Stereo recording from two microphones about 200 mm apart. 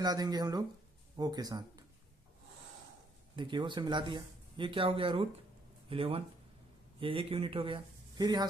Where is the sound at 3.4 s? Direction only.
25° right (ahead or behind).